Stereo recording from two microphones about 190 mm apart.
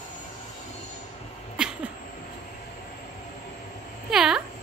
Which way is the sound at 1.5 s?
5° right (ahead or behind).